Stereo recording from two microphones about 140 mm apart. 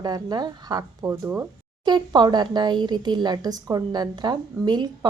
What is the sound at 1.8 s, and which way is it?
Speech, 30° right (ahead or behind).